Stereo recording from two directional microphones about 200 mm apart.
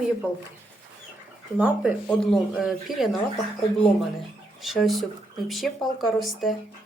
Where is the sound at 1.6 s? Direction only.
Centre (ahead or behind).